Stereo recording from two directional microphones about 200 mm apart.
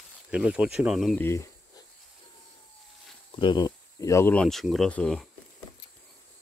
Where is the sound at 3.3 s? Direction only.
25° left (ahead or behind); by 5.3 s 5° left (ahead or behind).